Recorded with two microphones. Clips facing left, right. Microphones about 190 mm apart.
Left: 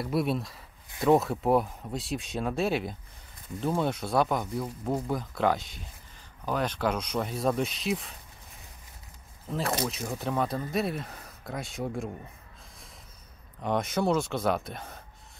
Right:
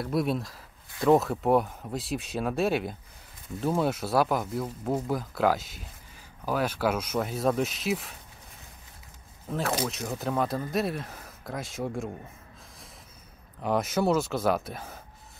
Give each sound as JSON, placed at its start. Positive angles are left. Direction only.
{"t": 0.0, "sound": "speech", "side_deg": 0}
{"t": 9.5, "sound": "speech", "side_deg": -5}
{"t": 13.6, "sound": "speech", "side_deg": -5}